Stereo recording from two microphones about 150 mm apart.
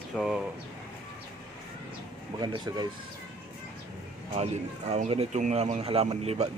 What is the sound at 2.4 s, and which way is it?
Speech, 30° right (ahead or behind).